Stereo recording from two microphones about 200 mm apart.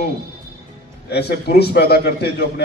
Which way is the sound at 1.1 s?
55° left (ahead or behind).